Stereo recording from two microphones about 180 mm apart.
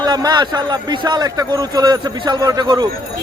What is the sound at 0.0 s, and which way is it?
Speech, 20° right (ahead or behind).